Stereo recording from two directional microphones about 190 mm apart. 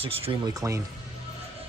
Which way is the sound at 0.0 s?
30° right (ahead or behind).